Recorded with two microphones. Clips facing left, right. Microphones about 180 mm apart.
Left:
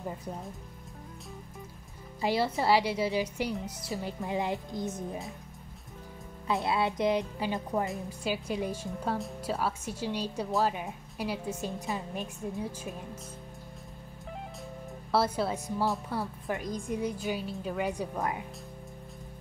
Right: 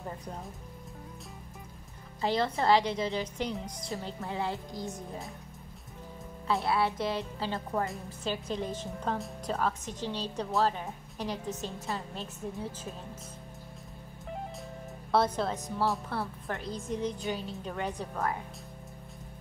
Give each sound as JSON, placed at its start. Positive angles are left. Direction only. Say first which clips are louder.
{"t": 2.2, "sound": "a woman's voice", "louder": "even", "side_deg": 10}
{"t": 6.4, "sound": "a woman's voice", "louder": "even", "side_deg": 20}
{"t": 15.0, "sound": "a woman's voice", "louder": "even", "side_deg": 5}